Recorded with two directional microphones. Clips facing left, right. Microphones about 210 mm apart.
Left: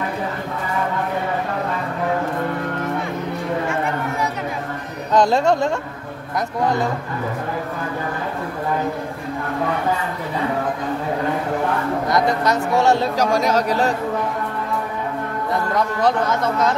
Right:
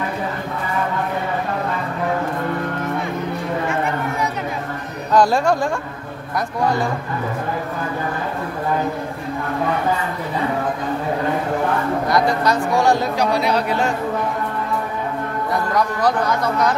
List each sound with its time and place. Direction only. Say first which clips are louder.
5.1 s speech: even; 20° left (ahead or behind)
12.1 s speech: even; 20° left (ahead or behind)
13.2 s speech: left 1 dB; 45° left (ahead or behind)
15.7 s speech: even; 25° left (ahead or behind)